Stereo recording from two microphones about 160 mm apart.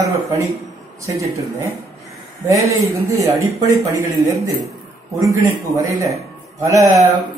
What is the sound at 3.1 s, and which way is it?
Speech, 20° right (ahead or behind).